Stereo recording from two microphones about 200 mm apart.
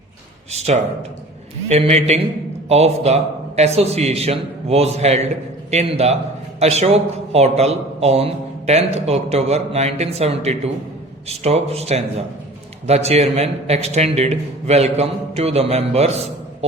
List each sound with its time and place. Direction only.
0.5 s a man's voice: 35° right (ahead or behind)